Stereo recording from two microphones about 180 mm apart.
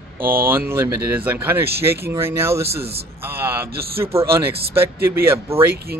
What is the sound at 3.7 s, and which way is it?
Speech, 60° right (ahead or behind).